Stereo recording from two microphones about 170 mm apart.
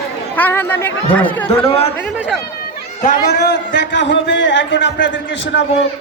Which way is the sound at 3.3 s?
85° left.